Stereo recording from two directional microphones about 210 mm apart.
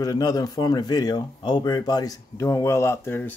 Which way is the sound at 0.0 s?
15° left (ahead or behind).